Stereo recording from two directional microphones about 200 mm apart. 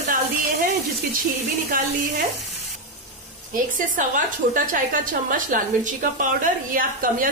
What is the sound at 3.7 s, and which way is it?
A woman's voice, 40° right (ahead or behind).